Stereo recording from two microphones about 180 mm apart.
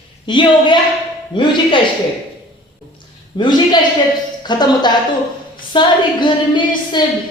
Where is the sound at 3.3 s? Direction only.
25° left (ahead or behind).